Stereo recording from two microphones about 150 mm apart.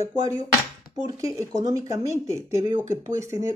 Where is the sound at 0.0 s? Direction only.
20° right (ahead or behind).